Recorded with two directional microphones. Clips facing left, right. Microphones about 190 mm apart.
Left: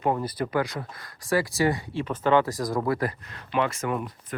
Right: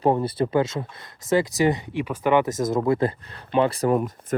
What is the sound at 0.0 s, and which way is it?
Speech, 30° right (ahead or behind).